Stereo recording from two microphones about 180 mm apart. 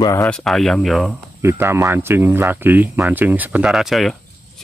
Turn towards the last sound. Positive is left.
turn(degrees=0)  # may be behind; listen again after turning